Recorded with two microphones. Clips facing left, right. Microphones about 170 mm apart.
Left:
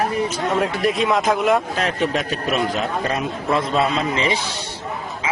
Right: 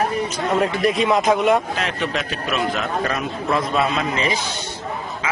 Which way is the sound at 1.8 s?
40° left (ahead or behind).